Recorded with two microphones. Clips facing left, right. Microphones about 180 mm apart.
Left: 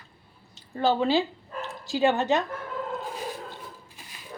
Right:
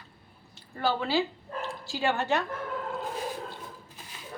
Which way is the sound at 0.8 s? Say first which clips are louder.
Left 4 dB; 20° left (ahead or behind).